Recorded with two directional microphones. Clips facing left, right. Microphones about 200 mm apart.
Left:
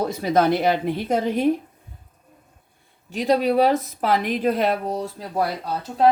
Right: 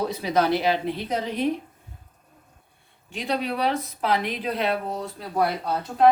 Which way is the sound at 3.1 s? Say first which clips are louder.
Left 8 dB; 40° left (ahead or behind).